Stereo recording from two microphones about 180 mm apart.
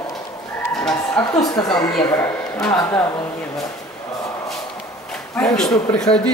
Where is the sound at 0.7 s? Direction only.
5° left (ahead or behind).